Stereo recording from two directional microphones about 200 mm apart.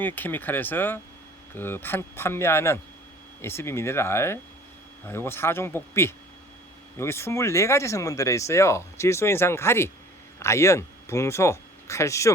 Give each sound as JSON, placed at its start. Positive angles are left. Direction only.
{"t": 0.0, "sound": "speech", "side_deg": 10}